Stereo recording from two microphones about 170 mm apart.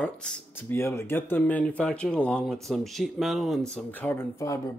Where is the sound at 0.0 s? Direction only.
5° left (ahead or behind).